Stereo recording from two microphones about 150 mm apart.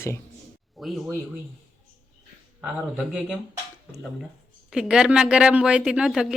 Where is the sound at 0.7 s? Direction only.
Centre (ahead or behind).